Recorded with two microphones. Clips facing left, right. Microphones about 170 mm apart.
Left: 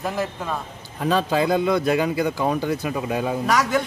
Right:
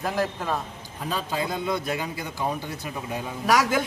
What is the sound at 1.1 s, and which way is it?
Speech, 80° left.